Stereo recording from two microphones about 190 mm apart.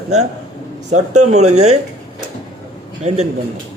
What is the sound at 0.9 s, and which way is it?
Speech, 35° right (ahead or behind).